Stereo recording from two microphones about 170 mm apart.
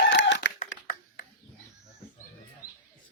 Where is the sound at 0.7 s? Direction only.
55° left (ahead or behind).